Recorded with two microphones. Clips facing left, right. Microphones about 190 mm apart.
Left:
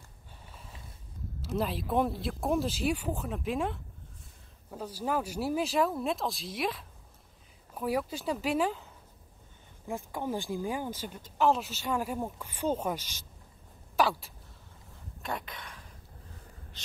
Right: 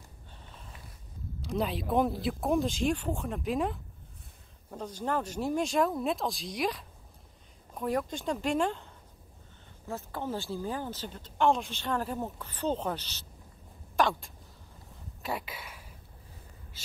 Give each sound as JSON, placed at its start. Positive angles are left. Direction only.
{"t": 1.4, "sound": "speech", "side_deg": 0}
{"t": 9.8, "sound": "speech", "side_deg": 15}
{"t": 15.2, "sound": "speech", "side_deg": -5}